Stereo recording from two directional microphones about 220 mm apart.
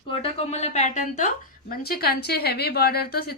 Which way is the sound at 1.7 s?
45° left (ahead or behind).